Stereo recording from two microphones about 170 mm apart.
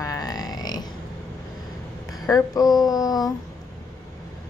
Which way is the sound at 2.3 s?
20° left (ahead or behind).